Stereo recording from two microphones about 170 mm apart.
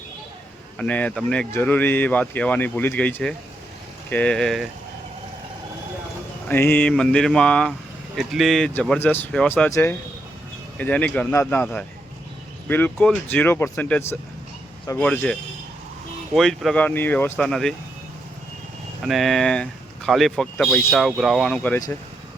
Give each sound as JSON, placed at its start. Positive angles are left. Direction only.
{"t": 0.8, "sound": "speech", "side_deg": 10}
{"t": 6.5, "sound": "speech", "side_deg": 10}
{"t": 9.6, "sound": "speech", "side_deg": 15}
{"t": 19.0, "sound": "speech", "side_deg": 0}